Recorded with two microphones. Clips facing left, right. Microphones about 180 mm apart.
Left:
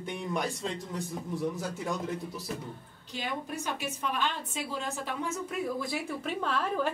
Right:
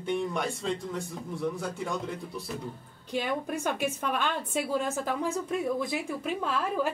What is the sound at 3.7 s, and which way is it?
Speech, 55° right (ahead or behind).